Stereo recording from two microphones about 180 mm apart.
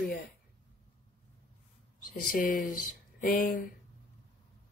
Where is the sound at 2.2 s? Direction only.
50° left (ahead or behind).